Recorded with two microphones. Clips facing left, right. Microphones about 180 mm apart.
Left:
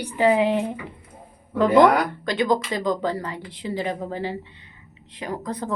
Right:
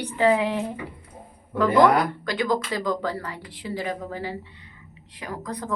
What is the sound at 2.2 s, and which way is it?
Speech, 20° left (ahead or behind).